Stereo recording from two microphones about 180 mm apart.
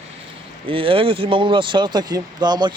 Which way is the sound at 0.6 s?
30° right (ahead or behind).